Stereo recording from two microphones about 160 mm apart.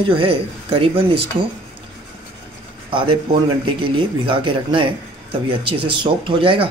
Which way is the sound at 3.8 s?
35° right (ahead or behind).